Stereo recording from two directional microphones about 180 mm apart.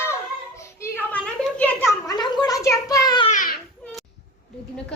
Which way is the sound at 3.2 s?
50° left (ahead or behind).